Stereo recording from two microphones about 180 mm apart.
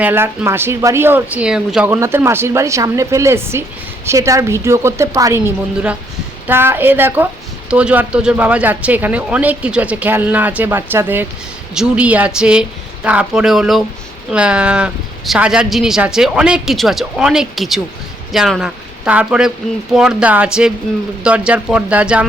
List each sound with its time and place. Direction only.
0.0 s speech: 10° right (ahead or behind)
5.7 s a woman's voice: 5° right (ahead or behind)